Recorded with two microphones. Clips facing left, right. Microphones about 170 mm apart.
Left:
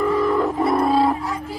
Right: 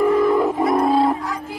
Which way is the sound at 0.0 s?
10° right (ahead or behind).